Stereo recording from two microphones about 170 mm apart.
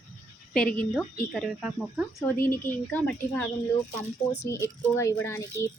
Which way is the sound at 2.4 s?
10° left (ahead or behind).